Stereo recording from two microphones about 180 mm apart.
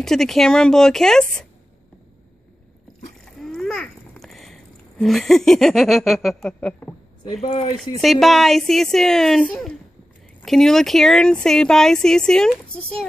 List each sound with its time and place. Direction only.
0.0 s speech: centre (ahead or behind)
3.3 s a sound: centre (ahead or behind)
7.4 s speech: 35° left (ahead or behind)
8.0 s speech: centre (ahead or behind)